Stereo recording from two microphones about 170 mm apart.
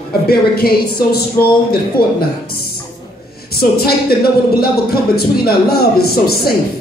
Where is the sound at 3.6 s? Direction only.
65° left (ahead or behind).